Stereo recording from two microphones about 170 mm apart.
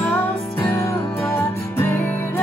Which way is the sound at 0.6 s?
15° left (ahead or behind).